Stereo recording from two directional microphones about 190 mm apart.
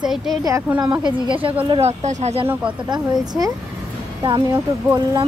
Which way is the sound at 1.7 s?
35° right (ahead or behind).